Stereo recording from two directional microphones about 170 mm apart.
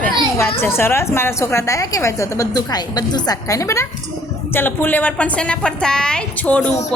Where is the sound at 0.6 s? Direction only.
15° left (ahead or behind).